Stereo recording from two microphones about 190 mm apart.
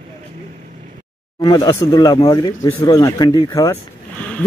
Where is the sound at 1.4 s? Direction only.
20° left (ahead or behind).